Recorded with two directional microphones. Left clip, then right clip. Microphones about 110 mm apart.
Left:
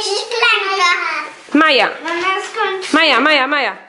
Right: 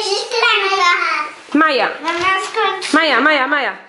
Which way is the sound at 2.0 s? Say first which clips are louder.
Right 1 dB; 35° right (ahead or behind).